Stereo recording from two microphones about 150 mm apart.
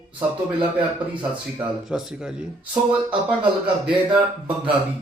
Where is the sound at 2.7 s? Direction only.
30° right (ahead or behind).